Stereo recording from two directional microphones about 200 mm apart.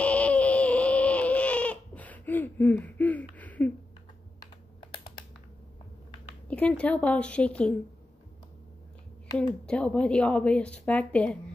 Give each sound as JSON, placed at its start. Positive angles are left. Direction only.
{"t": 0.0, "sound": "baby cry", "side_deg": 5}
{"t": 4.4, "sound": "computer keyboard", "side_deg": 25}
{"t": 6.5, "sound": "a woman's voice", "side_deg": 5}
{"t": 9.7, "sound": "a woman's voice", "side_deg": 5}